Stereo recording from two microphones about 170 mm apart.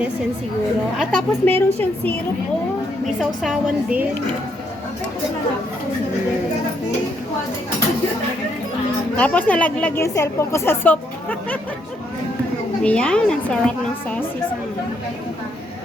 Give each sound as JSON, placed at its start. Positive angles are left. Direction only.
{"t": 1.3, "sound": "a woman's voice", "side_deg": 10}
{"t": 3.2, "sound": "a woman's voice", "side_deg": 0}
{"t": 9.1, "sound": "a woman's voice", "side_deg": 10}
{"t": 12.8, "sound": "a woman's voice", "side_deg": 5}